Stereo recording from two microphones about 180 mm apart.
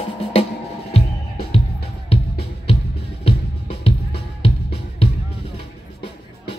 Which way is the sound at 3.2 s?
35° left (ahead or behind).